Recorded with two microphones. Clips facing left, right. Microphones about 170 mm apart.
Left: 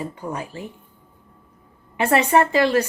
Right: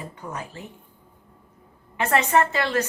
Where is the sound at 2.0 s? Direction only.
10° left (ahead or behind).